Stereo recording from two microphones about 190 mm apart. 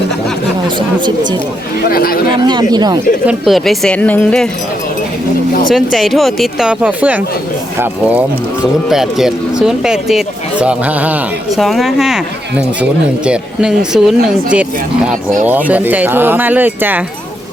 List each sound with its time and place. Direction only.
0.8 s speech: 25° right (ahead or behind)
1.9 s speech: 50° left (ahead or behind)
2.3 s speech: 25° right (ahead or behind)
3.2 s speech: centre (ahead or behind)
5.7 s speech: centre (ahead or behind)